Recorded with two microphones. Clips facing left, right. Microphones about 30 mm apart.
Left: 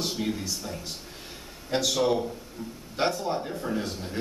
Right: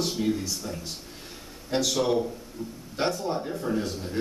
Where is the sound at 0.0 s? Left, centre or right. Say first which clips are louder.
Right 3 dB; centre.